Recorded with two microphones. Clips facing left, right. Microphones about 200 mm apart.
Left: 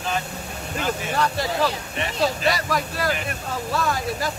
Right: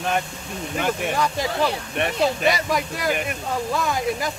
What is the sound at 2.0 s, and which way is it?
Speech, 60° right (ahead or behind).